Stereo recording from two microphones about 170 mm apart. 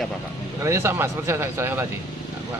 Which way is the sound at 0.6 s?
15° right (ahead or behind).